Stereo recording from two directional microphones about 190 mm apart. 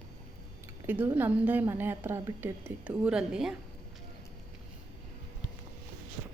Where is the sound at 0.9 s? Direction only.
10° right (ahead or behind).